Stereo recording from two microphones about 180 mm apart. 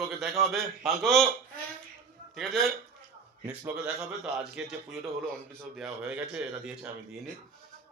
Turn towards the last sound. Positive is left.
turn(degrees=-5)  # may be behind; listen again after turning